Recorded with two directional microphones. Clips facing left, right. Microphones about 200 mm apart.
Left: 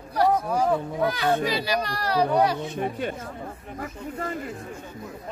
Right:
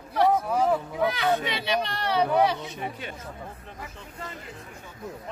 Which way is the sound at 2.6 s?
50° left (ahead or behind).